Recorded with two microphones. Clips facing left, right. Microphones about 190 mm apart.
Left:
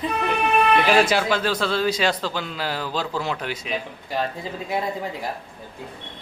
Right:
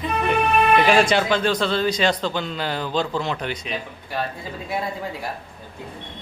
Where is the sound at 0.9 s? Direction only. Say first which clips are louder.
Right 1 dB; 5° left (ahead or behind).